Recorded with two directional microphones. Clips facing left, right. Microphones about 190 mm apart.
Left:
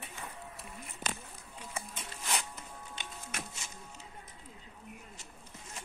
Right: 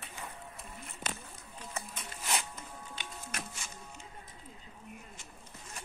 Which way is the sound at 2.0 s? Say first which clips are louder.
Right 1 dB; centre (ahead or behind).